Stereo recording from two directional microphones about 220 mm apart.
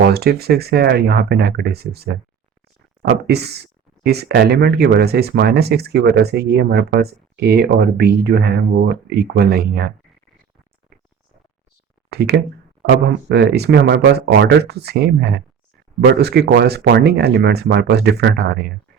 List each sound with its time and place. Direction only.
0.0 s speech: 45° right (ahead or behind)
12.1 s speech: 45° right (ahead or behind)